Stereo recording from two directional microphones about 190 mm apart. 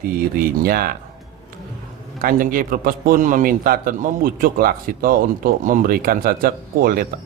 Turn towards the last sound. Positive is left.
turn(degrees=-50)  # may be behind; listen again after turning